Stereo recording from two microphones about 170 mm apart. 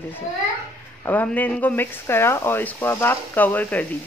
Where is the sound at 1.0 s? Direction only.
10° left (ahead or behind).